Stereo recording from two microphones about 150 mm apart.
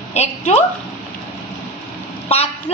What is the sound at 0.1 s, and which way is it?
Speech, 45° left (ahead or behind).